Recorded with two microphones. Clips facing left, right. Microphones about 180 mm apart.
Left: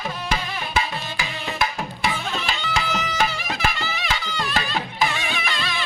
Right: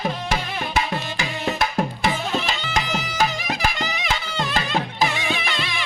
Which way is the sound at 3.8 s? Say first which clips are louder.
Right 2 dB; 20° right (ahead or behind).